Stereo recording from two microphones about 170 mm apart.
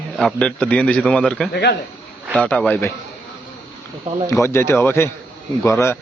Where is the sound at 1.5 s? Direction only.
75° left (ahead or behind).